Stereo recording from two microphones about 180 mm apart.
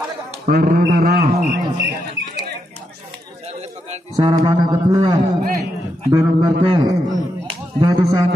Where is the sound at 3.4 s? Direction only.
35° right (ahead or behind).